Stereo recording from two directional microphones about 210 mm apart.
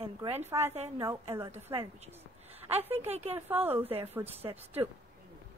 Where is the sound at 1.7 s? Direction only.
25° right (ahead or behind).